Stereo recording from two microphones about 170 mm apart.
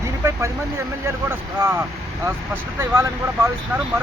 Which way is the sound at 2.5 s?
15° right (ahead or behind).